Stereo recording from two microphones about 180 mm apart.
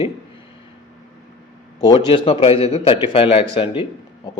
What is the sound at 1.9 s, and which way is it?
Speech, 30° left (ahead or behind).